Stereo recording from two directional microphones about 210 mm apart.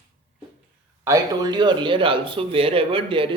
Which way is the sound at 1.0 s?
15° right (ahead or behind).